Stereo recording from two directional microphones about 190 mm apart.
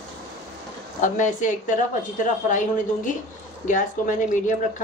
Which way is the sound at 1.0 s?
40° left (ahead or behind).